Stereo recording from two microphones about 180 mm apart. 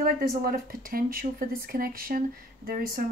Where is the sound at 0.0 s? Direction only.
55° right (ahead or behind).